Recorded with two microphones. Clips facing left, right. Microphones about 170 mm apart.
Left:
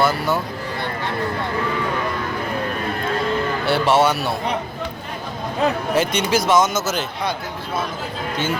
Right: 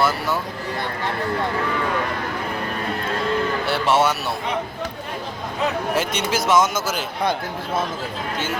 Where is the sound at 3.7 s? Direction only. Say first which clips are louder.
Left 3 dB; 30° left (ahead or behind).